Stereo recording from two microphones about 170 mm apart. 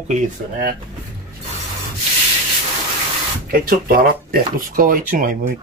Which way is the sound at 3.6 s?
60° right (ahead or behind).